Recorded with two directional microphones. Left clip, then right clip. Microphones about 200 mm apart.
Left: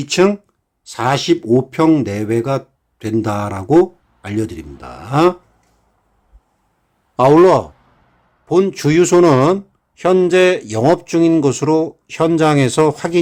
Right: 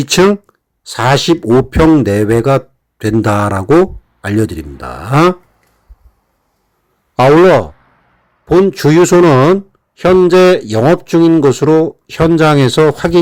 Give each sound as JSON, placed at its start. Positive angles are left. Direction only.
{"t": 0.0, "sound": "speech", "side_deg": -25}
{"t": 7.2, "sound": "speech", "side_deg": -20}